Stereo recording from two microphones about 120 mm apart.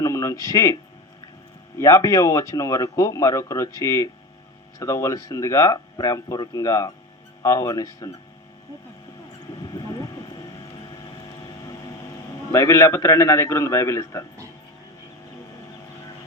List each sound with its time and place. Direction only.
0.0 s a sound: 25° left (ahead or behind)
0.4 s speech: 25° left (ahead or behind)
1.8 s speech: 25° left (ahead or behind)
9.6 s a sound: 35° left (ahead or behind)
11.4 s vehicle: 35° left (ahead or behind)
12.5 s speech: 25° left (ahead or behind)